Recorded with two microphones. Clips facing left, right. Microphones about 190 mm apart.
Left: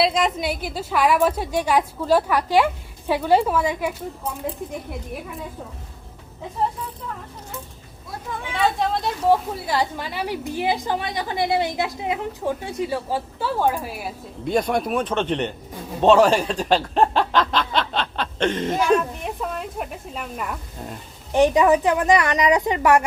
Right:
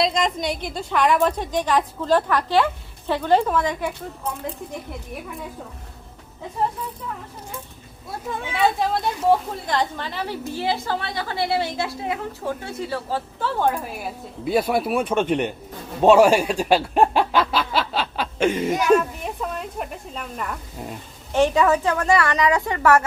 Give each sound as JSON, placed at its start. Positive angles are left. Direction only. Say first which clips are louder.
{"t": 0.0, "sound": "a woman's voice", "louder": "left 1 dB", "side_deg": 5}
{"t": 8.9, "sound": "a woman's voice", "louder": "even", "side_deg": 0}
{"t": 21.3, "sound": "a woman's voice", "louder": "left 2 dB", "side_deg": 15}